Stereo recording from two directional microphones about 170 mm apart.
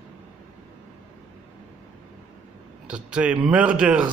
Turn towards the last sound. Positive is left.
turn(degrees=-5)  # may be behind; listen again after turning